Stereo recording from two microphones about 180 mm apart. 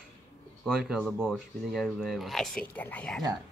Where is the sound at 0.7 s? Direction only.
Centre (ahead or behind).